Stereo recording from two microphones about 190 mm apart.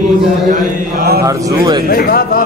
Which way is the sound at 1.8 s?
50° left (ahead or behind).